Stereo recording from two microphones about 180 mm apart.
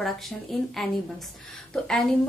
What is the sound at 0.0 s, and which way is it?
A woman's voice, centre (ahead or behind).